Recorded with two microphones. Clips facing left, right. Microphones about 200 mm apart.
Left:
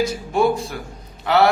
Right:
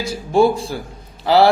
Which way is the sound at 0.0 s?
30° right (ahead or behind).